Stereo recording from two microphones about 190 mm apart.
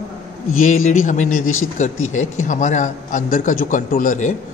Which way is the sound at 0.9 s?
40° left (ahead or behind).